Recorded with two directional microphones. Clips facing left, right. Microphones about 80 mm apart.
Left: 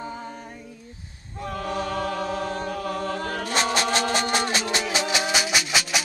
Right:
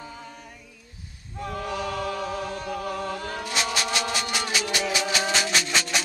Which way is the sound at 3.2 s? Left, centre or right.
Left.